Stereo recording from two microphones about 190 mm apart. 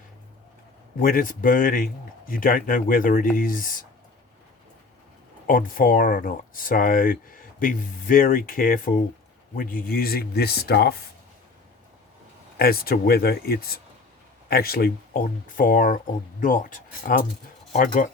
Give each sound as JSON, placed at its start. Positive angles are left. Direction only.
{"t": 0.9, "sound": "speech", "side_deg": 45}
{"t": 5.5, "sound": "speech", "side_deg": 45}
{"t": 12.5, "sound": "speech", "side_deg": 55}